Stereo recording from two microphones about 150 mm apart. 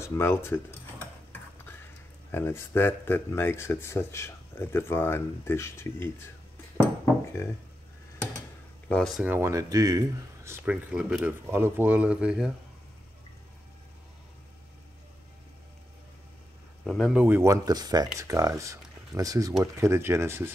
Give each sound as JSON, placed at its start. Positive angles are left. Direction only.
{"t": 0.0, "sound": "speech", "side_deg": 15}
{"t": 2.3, "sound": "speech", "side_deg": 15}
{"t": 8.8, "sound": "speech", "side_deg": 5}
{"t": 9.2, "sound": "speech", "side_deg": -15}
{"t": 16.8, "sound": "speech", "side_deg": 0}
{"t": 17.2, "sound": "speech", "side_deg": -15}